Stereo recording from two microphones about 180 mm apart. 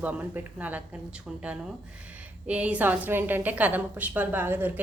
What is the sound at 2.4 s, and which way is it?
A woman's voice, 5° right (ahead or behind).